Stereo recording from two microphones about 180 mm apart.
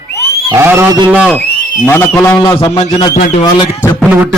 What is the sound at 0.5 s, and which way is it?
Speech, 15° right (ahead or behind).